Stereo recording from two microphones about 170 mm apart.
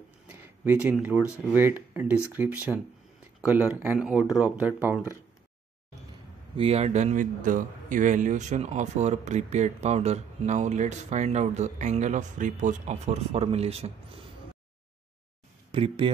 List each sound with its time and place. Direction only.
0.3 s a sound: 10° right (ahead or behind)
1.5 s speech: 10° right (ahead or behind)
6.5 s a man's voice: 35° right (ahead or behind)
15.7 s speech: 30° right (ahead or behind)